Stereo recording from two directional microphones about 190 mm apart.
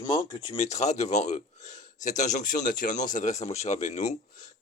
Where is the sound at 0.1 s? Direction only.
25° left (ahead or behind).